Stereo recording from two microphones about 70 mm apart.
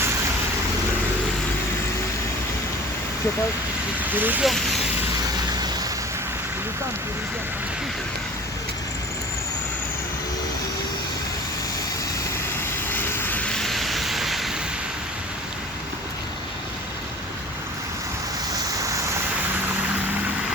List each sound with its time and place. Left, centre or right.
4.1 s speech: right
12.9 s vehicle: left
13.5 s vehicle: centre